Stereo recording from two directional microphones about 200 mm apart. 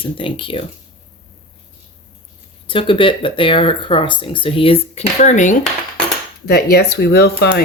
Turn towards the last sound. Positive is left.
turn(degrees=50)  # may be behind; listen again after turning